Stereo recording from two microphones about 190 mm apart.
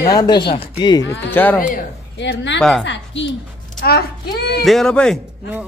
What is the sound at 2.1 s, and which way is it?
A woman's voice, 70° left (ahead or behind).